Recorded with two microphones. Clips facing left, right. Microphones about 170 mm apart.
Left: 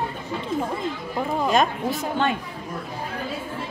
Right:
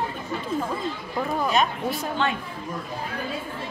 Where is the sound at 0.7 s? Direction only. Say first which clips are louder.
Left 1 dB; 20° left (ahead or behind).